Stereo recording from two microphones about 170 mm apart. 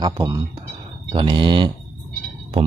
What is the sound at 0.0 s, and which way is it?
A man's voice, 25° right (ahead or behind).